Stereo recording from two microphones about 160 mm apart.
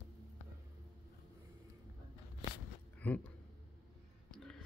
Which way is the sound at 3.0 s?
10° left (ahead or behind).